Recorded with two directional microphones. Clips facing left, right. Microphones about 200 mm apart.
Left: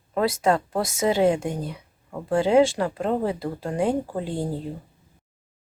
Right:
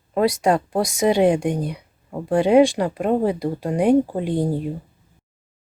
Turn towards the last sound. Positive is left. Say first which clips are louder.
# right 6 dB
turn(degrees=-15)  # may be behind; listen again after turning